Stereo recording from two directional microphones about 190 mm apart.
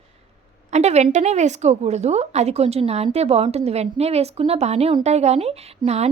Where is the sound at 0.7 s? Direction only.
35° right (ahead or behind).